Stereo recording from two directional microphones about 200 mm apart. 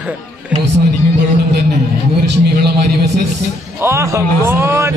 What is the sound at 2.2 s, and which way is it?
Speech, 55° right (ahead or behind).